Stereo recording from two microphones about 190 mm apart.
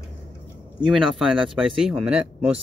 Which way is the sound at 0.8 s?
Centre (ahead or behind).